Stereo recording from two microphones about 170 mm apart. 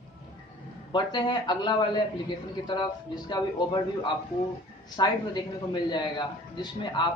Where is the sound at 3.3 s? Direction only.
25° left (ahead or behind).